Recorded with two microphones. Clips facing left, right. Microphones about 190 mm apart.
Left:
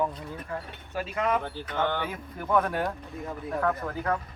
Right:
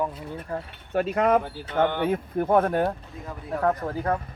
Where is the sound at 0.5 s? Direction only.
40° right (ahead or behind).